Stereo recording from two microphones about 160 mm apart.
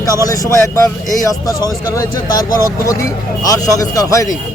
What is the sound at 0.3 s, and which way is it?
Speech, 20° left (ahead or behind).